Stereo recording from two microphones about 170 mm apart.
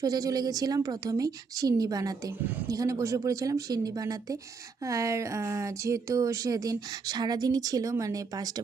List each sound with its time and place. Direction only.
0.0 s speech: 20° right (ahead or behind)